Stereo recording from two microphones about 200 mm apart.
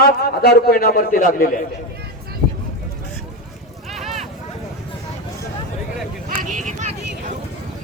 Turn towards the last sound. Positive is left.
turn(degrees=-40)  # may be behind; listen again after turning